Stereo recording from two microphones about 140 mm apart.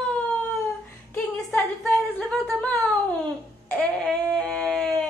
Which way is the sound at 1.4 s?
Centre (ahead or behind).